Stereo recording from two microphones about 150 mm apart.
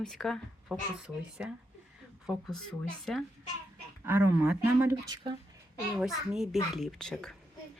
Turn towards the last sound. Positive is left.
turn(degrees=5)  # may be behind; listen again after turning